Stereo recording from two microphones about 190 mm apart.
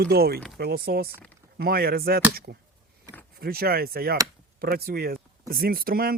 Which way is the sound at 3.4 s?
55° right (ahead or behind).